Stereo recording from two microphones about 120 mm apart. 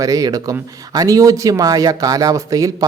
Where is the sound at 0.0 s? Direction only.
30° right (ahead or behind).